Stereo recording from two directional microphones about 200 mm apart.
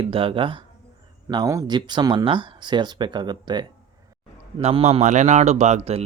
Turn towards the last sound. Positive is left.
turn(degrees=-30)  # may be behind; listen again after turning